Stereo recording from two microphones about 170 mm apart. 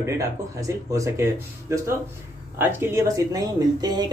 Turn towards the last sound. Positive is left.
turn(degrees=-25)  # may be behind; listen again after turning